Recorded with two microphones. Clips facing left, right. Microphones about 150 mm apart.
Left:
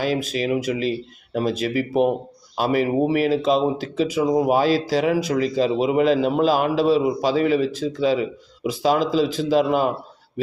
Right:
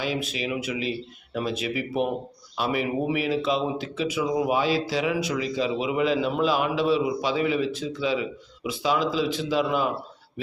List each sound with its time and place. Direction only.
0.0 s speech: 40° left (ahead or behind)